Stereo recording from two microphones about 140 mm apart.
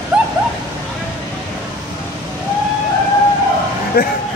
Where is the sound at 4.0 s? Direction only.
90° left.